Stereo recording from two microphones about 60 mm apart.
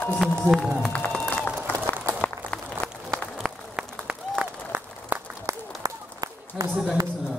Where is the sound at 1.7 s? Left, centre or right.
Left.